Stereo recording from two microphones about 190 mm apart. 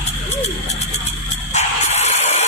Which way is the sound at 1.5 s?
35° left (ahead or behind).